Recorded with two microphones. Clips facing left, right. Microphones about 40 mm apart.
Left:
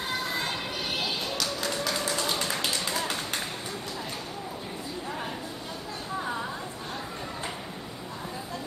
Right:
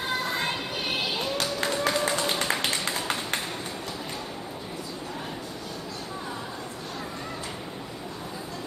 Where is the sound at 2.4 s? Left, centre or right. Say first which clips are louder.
Right 3 dB; right.